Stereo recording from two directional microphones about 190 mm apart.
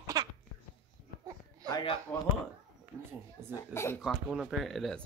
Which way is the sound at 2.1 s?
10° left (ahead or behind).